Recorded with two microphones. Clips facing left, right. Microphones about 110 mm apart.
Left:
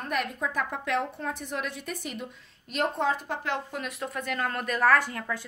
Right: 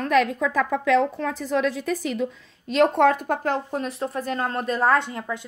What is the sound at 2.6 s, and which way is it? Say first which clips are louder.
A woman's voice: right 9 dB; 90° right.